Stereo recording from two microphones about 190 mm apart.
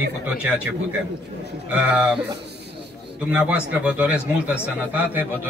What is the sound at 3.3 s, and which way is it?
Speech, 5° right (ahead or behind).